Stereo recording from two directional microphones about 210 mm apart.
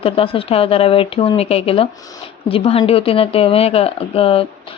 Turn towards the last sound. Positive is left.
turn(degrees=25)  # may be behind; listen again after turning